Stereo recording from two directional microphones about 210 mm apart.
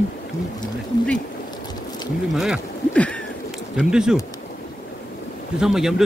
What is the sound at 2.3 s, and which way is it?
Speech, centre (ahead or behind).